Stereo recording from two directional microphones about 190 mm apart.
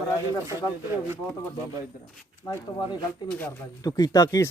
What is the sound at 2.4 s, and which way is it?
Speech, 20° left (ahead or behind).